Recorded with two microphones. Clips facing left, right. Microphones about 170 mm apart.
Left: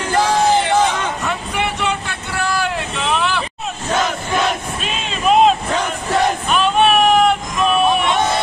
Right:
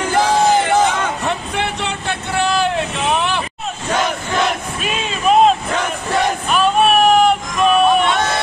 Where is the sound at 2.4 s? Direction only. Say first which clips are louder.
Right 3 dB; 25° right (ahead or behind).